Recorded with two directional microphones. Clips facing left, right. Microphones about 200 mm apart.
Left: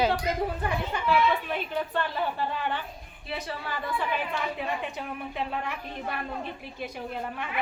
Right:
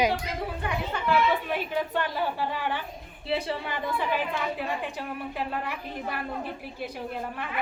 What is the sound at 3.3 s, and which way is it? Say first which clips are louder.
Speech: right 5 dB; 30° right (ahead or behind).